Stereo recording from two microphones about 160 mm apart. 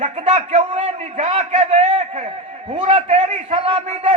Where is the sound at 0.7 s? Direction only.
40° right (ahead or behind).